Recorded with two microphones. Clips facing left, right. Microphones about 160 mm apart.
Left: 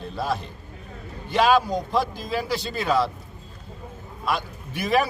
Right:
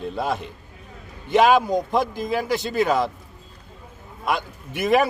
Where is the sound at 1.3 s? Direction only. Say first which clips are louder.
Right 3 dB; 20° right (ahead or behind).